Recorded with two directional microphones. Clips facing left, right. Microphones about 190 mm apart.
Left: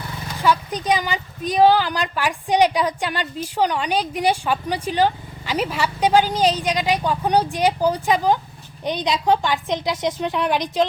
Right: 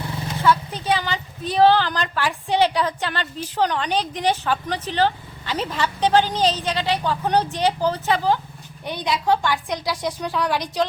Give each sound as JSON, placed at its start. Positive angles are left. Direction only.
{"t": 0.4, "sound": "a woman's voice", "side_deg": 15}